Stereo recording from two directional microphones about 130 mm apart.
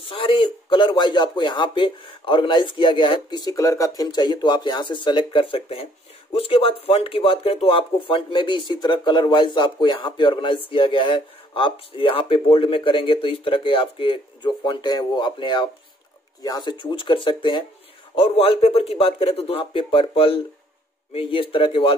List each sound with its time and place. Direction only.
0.1 s speech: 40° left (ahead or behind)
18.1 s a man's voice: 50° left (ahead or behind)